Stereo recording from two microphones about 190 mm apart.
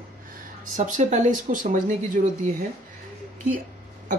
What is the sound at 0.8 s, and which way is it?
Speech, 40° right (ahead or behind).